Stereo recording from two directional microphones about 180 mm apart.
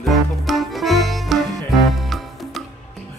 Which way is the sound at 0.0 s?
Centre (ahead or behind).